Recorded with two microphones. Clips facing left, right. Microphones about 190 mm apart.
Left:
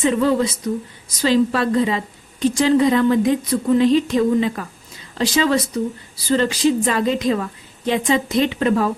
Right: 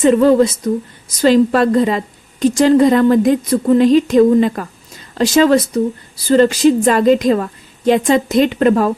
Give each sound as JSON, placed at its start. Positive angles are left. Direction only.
{"t": 0.0, "sound": "a woman's voice", "side_deg": -45}